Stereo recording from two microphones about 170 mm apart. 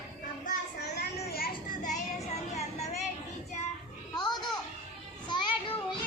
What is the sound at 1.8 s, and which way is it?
Child singing, 40° left (ahead or behind).